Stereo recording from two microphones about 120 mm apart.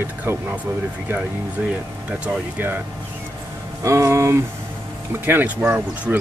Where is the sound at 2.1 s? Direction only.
15° right (ahead or behind).